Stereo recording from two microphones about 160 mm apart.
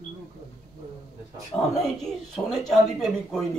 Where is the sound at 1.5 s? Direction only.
15° left (ahead or behind).